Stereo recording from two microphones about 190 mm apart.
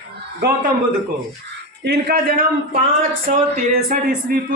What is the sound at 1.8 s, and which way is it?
Speech, 55° right (ahead or behind).